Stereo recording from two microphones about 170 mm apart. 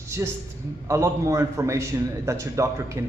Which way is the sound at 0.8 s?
15° right (ahead or behind).